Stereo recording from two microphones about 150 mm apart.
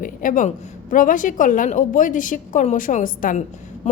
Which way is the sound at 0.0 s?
60° left (ahead or behind).